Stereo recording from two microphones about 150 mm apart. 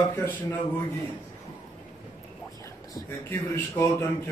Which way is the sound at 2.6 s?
15° left (ahead or behind).